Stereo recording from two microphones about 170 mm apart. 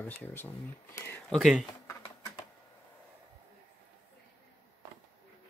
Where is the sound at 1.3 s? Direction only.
Centre (ahead or behind).